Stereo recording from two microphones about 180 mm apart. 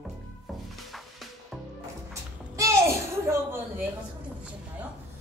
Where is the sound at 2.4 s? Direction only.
15° right (ahead or behind).